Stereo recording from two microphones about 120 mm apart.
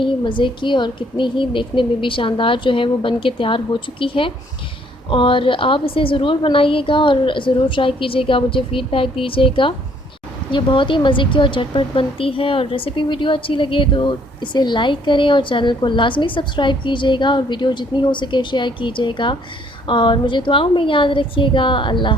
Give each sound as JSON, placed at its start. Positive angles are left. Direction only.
{"t": 0.0, "sound": "a woman's voice", "side_deg": 45}